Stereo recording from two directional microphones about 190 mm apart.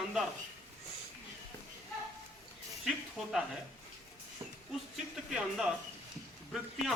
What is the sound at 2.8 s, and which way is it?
Speech, centre (ahead or behind).